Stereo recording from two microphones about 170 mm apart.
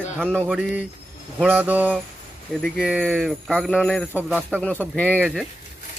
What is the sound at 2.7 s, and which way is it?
Speech, 5° right (ahead or behind).